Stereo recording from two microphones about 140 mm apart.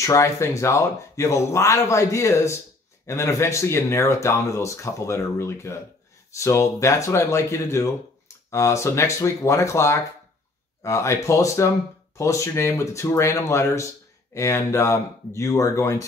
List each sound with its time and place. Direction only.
0.0 s speech: 20° left (ahead or behind)